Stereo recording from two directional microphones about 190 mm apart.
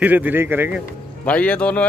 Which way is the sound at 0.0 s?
10° right (ahead or behind).